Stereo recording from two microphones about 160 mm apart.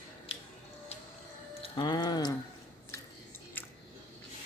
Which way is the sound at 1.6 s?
30° left (ahead or behind).